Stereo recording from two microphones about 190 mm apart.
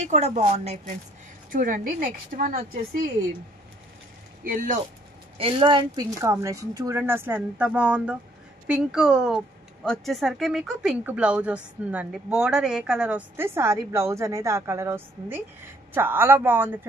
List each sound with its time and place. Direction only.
0.0 s a woman's voice: 35° right (ahead or behind)
4.5 s a woman's voice: 45° right (ahead or behind)
5.4 s a woman's voice: 25° right (ahead or behind); by 16.8 s 10° right (ahead or behind)